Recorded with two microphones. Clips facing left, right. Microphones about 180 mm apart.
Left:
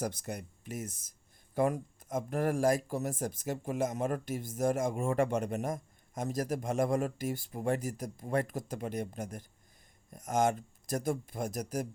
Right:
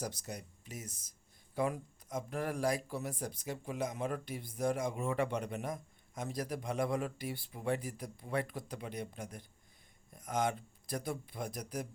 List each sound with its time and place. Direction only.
0.0 s speech: 55° left (ahead or behind)